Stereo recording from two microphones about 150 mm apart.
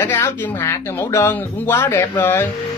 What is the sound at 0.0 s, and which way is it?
Speech, 15° left (ahead or behind).